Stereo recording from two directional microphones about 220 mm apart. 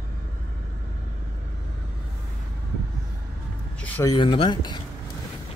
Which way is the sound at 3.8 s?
10° left (ahead or behind).